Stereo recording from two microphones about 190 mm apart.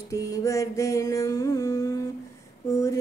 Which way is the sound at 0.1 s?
15° left (ahead or behind).